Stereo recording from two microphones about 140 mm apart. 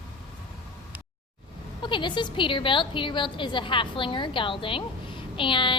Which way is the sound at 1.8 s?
35° left (ahead or behind).